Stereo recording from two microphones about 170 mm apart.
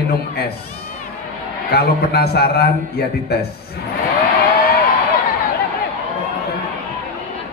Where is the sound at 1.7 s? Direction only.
70° left (ahead or behind).